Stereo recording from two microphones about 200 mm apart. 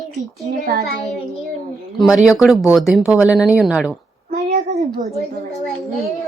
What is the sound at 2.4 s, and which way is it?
Speech, centre (ahead or behind).